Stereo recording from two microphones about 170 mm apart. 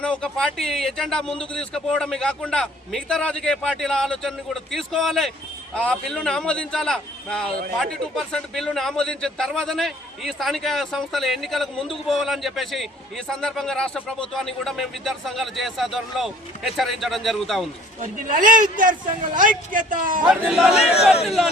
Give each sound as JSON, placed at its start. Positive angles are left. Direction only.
{"t": 0.0, "sound": "a man's voice", "side_deg": 5}
{"t": 18.0, "sound": "a man's voice", "side_deg": -50}
{"t": 20.2, "sound": "a man's voice", "side_deg": -5}